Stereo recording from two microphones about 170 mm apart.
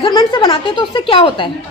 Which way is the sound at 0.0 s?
25° left (ahead or behind).